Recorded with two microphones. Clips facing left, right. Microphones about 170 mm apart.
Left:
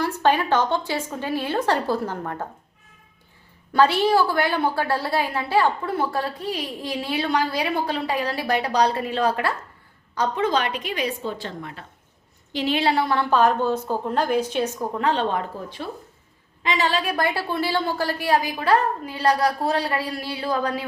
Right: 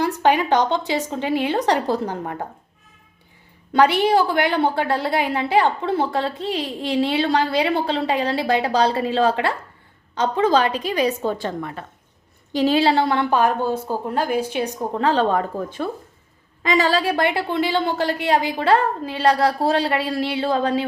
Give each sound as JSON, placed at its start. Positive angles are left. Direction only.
{"t": 0.2, "sound": "a woman's voice", "side_deg": -15}
{"t": 3.7, "sound": "a woman's voice", "side_deg": -15}
{"t": 12.5, "sound": "a woman's voice", "side_deg": -40}
{"t": 14.9, "sound": "a woman's voice", "side_deg": -35}